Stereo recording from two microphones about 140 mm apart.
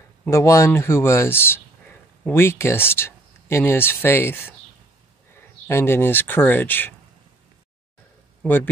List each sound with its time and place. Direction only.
0.3 s speech: 20° left (ahead or behind)
8.4 s speech: 15° left (ahead or behind)